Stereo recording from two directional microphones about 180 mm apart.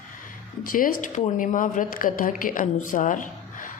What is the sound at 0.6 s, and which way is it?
Speech, 50° left (ahead or behind).